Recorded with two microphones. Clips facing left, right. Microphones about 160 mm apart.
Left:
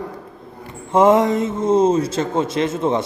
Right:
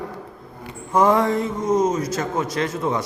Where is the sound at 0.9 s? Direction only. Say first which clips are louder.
Left 4 dB; 20° left (ahead or behind).